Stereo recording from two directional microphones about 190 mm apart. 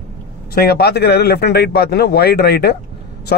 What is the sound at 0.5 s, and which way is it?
Speech, 55° left (ahead or behind).